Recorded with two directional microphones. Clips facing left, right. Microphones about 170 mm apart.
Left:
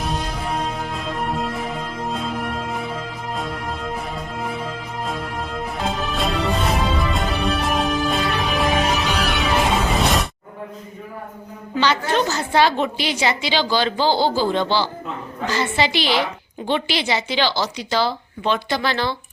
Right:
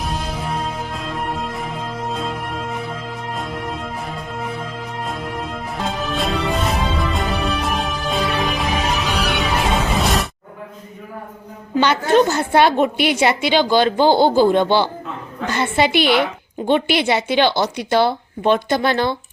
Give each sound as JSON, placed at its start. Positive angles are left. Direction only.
{"t": 0.0, "sound": "music", "side_deg": 0}
{"t": 12.3, "sound": "a woman's voice", "side_deg": -55}